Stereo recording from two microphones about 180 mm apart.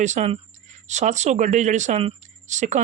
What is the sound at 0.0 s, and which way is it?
A man's voice, 40° right (ahead or behind).